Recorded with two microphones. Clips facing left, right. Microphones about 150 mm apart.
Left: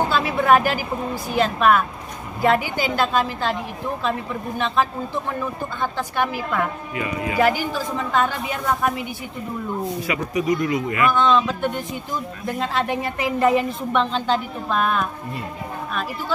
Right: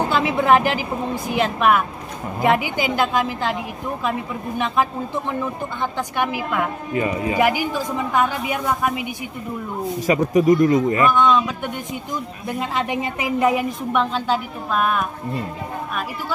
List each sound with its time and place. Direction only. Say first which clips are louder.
0.1 s a woman's voice: right 2 dB; 20° right (ahead or behind)
4.6 s a woman's voice: right 1 dB; 15° right (ahead or behind)
6.9 s speech: right 4 dB; 35° right (ahead or behind)
7.3 s a woman's voice: left 1 dB; 15° right (ahead or behind)
10.0 s speech: right 9 dB; 45° right (ahead or behind)
11.1 s a woman's voice: right 1 dB; 10° right (ahead or behind)